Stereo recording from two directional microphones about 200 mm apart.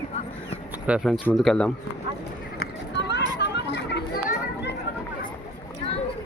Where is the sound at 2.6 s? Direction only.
55° left (ahead or behind).